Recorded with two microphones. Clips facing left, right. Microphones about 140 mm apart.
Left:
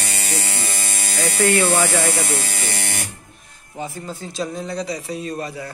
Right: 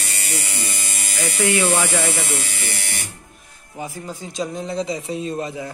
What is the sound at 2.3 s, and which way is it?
Electric shaver, 45° left (ahead or behind).